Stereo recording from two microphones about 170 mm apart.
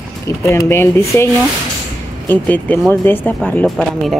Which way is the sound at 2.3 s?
10° left (ahead or behind).